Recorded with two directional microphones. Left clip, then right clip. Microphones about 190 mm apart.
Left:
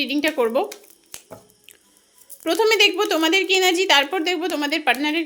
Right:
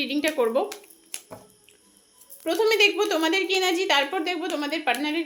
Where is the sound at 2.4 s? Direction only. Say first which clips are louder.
Left 4 dB; 35° left (ahead or behind).